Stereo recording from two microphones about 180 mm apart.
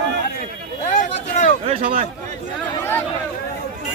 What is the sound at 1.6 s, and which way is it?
Speech, 50° right (ahead or behind).